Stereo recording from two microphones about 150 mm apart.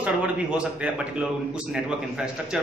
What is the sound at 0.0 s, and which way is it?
A man's voice, 10° right (ahead or behind).